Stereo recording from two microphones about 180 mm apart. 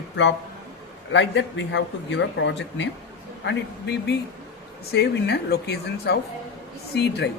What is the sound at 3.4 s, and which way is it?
A man's voice, 70° left (ahead or behind).